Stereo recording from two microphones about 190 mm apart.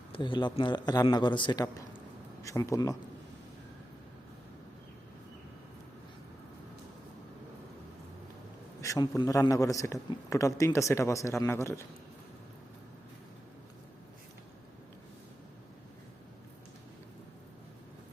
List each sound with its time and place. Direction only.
0.1 s a man's voice: 25° left (ahead or behind)
8.8 s a man's voice: 20° left (ahead or behind)